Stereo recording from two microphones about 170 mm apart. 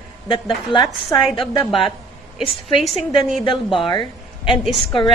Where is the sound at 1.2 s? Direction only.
Centre (ahead or behind).